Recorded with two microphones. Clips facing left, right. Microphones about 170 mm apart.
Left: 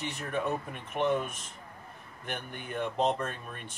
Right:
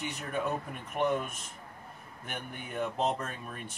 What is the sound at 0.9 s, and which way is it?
Speech, centre (ahead or behind).